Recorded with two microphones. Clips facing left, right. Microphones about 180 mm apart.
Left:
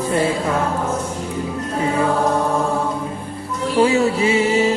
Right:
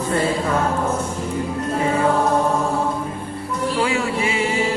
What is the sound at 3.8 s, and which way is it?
Mantra, 25° left (ahead or behind).